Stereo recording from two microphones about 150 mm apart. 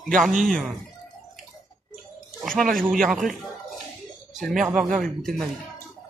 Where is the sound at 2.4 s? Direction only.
5° left (ahead or behind).